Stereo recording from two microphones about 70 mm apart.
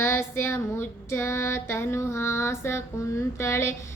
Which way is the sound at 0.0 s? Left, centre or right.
Left.